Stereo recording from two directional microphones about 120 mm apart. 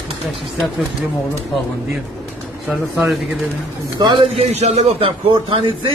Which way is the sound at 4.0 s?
50° right (ahead or behind).